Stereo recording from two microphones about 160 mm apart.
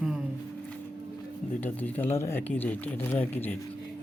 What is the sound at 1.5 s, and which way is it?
Speech, 10° left (ahead or behind).